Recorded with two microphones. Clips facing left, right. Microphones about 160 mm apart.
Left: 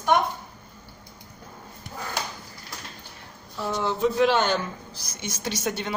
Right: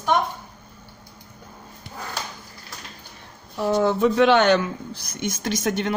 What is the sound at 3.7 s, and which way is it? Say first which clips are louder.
Speech: right 6 dB; 50° right (ahead or behind).